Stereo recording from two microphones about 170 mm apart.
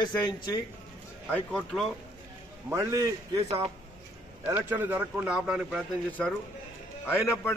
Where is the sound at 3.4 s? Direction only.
35° right (ahead or behind).